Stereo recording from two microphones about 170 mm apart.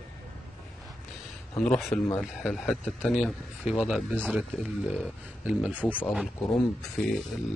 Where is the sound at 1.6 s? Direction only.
5° left (ahead or behind).